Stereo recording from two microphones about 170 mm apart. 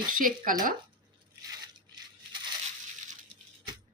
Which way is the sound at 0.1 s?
55° right (ahead or behind).